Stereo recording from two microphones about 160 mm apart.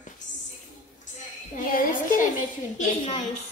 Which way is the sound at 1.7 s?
60° left (ahead or behind).